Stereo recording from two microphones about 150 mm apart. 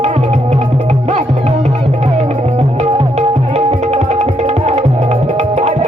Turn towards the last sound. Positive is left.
turn(degrees=-50)  # may be behind; listen again after turning